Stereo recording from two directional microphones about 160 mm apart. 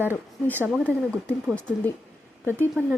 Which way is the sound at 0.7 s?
5° left (ahead or behind).